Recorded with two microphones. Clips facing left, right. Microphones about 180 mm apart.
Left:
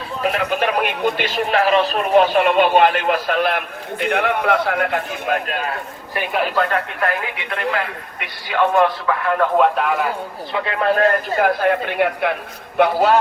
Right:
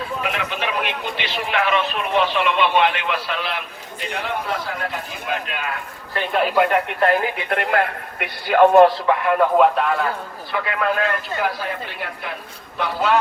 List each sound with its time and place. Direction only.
0.2 s a man's voice: 45° left (ahead or behind)
6.2 s a man's voice: 15° left (ahead or behind)
6.5 s speech: 15° right (ahead or behind)
7.0 s speech: 25° right (ahead or behind)
7.5 s a man's voice: 55° right (ahead or behind)
9.3 s speech: 5° right (ahead or behind)
10.5 s a man's voice: 30° left (ahead or behind); by 12.3 s 65° left (ahead or behind)